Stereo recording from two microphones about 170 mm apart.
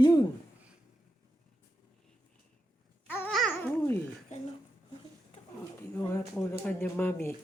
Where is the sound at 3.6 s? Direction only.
10° left (ahead or behind).